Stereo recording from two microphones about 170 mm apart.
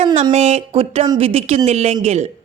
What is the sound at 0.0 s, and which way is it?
Speech, 35° right (ahead or behind).